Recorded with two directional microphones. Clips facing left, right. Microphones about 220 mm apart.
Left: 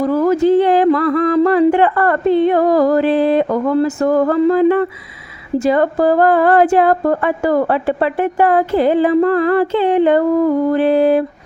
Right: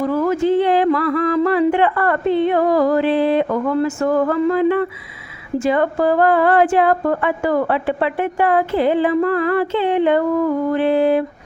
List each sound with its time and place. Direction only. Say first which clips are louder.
0.0 s a woman's voice: left 4 dB; 40° left (ahead or behind)